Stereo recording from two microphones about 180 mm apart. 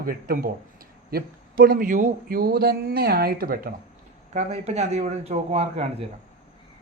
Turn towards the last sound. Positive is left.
turn(degrees=-35)  # may be behind; listen again after turning